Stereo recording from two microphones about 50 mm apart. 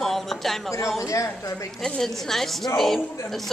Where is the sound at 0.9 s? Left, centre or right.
Left.